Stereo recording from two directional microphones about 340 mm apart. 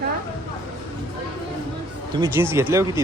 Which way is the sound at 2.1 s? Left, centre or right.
Centre.